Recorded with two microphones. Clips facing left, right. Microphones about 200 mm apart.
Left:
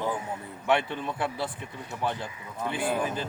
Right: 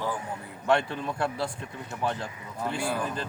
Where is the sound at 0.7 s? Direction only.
Centre (ahead or behind).